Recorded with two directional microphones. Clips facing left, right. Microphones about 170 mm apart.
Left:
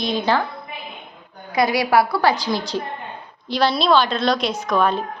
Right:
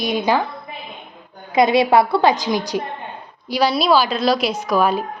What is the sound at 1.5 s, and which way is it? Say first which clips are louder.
A woman's voice: right 3 dB; 25° right (ahead or behind).